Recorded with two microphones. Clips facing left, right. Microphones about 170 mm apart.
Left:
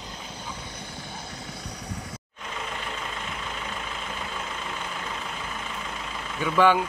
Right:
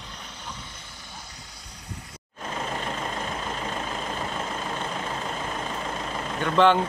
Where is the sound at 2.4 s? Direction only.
40° right (ahead or behind).